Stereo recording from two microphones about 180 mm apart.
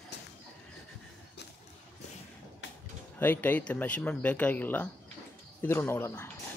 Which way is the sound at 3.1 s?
10° left (ahead or behind).